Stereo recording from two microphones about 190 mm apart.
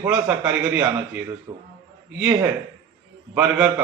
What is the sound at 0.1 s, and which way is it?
A man's voice, 10° right (ahead or behind).